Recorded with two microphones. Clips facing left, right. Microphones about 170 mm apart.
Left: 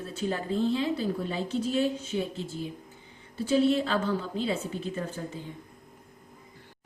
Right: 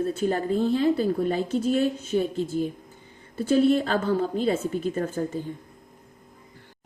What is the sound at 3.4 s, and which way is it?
A woman's voice, 50° right (ahead or behind).